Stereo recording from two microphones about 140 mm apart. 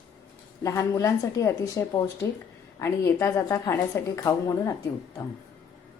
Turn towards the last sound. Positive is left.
turn(degrees=25)  # may be behind; listen again after turning